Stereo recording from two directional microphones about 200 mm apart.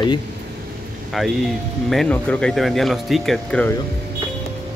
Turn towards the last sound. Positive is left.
turn(degrees=5)  # may be behind; listen again after turning